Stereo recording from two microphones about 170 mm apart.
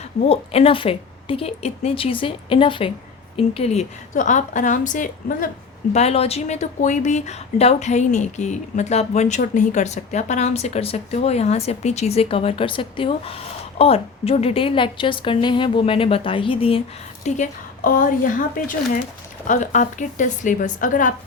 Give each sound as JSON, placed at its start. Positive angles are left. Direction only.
{"t": 0.0, "sound": "a woman's voice", "side_deg": 35}
{"t": 5.9, "sound": "a woman's voice", "side_deg": 40}
{"t": 17.2, "sound": "a woman's voice", "side_deg": 45}